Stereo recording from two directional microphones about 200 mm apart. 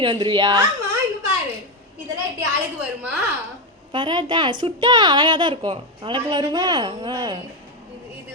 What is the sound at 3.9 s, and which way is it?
A woman's voice, 25° right (ahead or behind).